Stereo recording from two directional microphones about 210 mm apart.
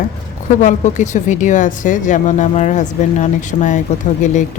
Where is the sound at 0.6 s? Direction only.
35° left (ahead or behind).